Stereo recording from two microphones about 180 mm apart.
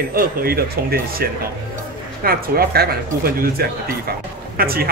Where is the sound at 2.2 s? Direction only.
55° right (ahead or behind).